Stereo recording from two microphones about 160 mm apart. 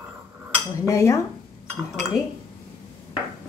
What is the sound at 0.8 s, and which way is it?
Speech, 20° left (ahead or behind).